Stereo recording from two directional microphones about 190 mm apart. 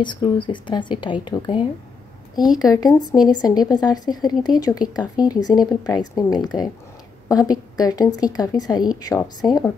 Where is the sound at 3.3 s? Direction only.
20° left (ahead or behind).